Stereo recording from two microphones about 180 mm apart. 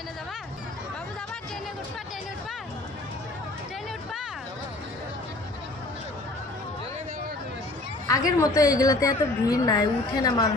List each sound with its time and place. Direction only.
8.3 s a woman's voice: 20° left (ahead or behind)